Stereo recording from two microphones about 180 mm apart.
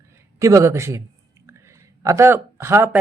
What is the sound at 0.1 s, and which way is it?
Speech, 15° right (ahead or behind).